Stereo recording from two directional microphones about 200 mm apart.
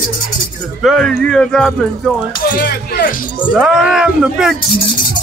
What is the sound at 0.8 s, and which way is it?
Speech, 5° left (ahead or behind).